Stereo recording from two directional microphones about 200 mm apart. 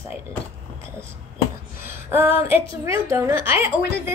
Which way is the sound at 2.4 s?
10° right (ahead or behind).